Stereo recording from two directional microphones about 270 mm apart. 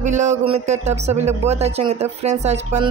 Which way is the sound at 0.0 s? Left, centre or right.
Right.